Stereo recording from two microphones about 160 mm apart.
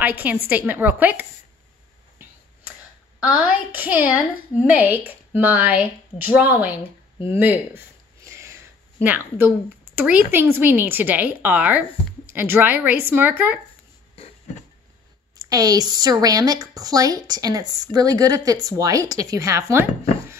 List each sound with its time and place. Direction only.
0.2 s a woman's voice: 10° right (ahead or behind)
3.7 s a woman's voice: 10° right (ahead or behind)
7.2 s a sound: 10° right (ahead or behind)
9.9 s a woman's voice: 10° right (ahead or behind)
15.3 s speech: 25° right (ahead or behind)